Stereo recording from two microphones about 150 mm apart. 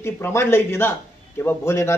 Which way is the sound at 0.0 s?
15° left (ahead or behind).